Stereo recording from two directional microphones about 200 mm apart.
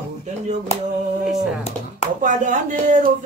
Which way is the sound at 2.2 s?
40° right (ahead or behind).